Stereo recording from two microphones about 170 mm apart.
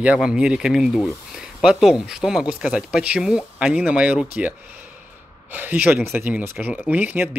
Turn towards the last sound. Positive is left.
turn(degrees=-10)  # may be behind; listen again after turning